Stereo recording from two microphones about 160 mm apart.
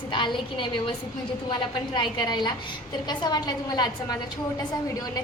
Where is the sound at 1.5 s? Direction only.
30° left (ahead or behind).